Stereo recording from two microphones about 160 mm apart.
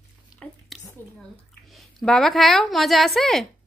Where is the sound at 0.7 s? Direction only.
Centre (ahead or behind).